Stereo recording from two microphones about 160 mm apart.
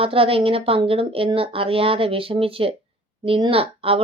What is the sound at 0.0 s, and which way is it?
A woman's voice, 35° right (ahead or behind).